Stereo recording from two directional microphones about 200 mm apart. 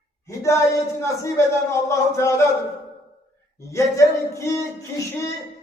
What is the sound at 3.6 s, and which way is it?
Speech, 15° left (ahead or behind).